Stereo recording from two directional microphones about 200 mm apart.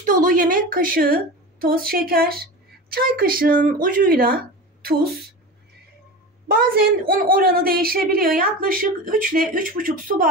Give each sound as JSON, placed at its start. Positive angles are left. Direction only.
{"t": 0.0, "sound": "a woman's voice", "side_deg": -40}
{"t": 6.4, "sound": "a woman's voice", "side_deg": -45}